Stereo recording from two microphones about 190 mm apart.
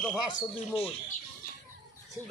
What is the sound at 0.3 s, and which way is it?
Speech, 30° left (ahead or behind).